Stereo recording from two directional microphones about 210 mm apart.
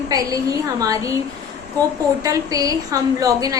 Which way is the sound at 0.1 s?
15° right (ahead or behind).